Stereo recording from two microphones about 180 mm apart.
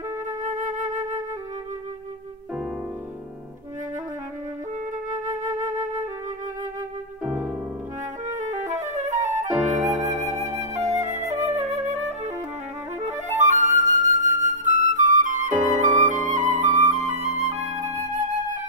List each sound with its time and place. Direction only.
0.4 s flute: 45° right (ahead or behind)
5.3 s flute: 20° right (ahead or behind)
8.3 s music: 45° right (ahead or behind)
10.6 s flute: 40° right (ahead or behind)